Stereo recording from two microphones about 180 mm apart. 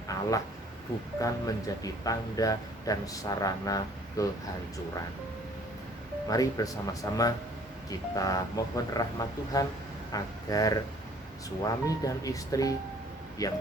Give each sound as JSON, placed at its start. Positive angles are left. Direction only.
{"t": 0.1, "sound": "a sound", "side_deg": 20}
{"t": 1.2, "sound": "speech", "side_deg": 20}
{"t": 6.2, "sound": "speech", "side_deg": 20}
{"t": 12.0, "sound": "speech", "side_deg": 20}